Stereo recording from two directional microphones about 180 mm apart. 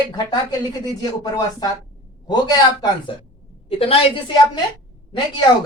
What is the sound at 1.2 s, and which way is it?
Speech, 25° left (ahead or behind).